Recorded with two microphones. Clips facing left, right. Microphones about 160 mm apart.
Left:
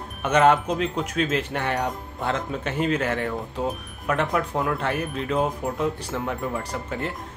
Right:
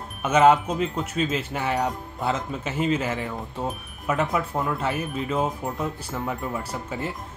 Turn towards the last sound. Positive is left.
turn(degrees=-5)  # may be behind; listen again after turning